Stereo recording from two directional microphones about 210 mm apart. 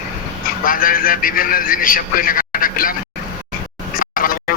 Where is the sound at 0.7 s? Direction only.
40° left (ahead or behind).